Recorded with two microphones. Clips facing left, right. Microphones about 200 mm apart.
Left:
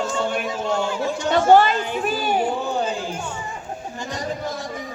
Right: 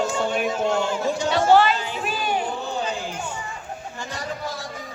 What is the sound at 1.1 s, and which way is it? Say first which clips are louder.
Speech: left 3 dB; 50° left (ahead or behind).